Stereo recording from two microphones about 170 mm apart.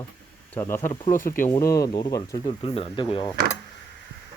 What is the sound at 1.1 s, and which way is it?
Speech, 50° left (ahead or behind).